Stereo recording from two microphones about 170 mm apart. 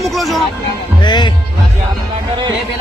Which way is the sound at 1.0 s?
25° left (ahead or behind).